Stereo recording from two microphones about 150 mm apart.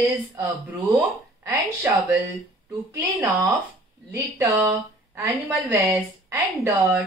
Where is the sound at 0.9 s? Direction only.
15° right (ahead or behind).